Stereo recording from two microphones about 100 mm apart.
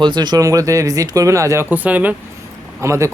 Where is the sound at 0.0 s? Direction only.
45° right (ahead or behind); by 1.6 s 30° right (ahead or behind).